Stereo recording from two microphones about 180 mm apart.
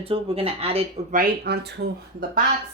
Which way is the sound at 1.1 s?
55° right (ahead or behind).